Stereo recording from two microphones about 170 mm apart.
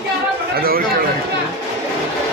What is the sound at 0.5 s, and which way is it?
Speech, 60° right (ahead or behind).